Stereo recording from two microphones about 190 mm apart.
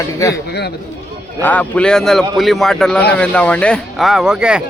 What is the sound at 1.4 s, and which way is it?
Speech, 5° left (ahead or behind).